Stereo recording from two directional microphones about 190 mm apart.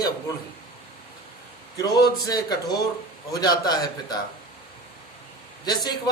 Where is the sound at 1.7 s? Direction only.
20° left (ahead or behind).